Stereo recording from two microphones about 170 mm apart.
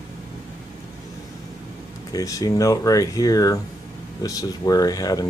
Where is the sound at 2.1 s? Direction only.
20° left (ahead or behind).